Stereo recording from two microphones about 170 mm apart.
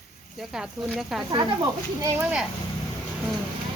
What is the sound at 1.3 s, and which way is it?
Speech, 25° right (ahead or behind).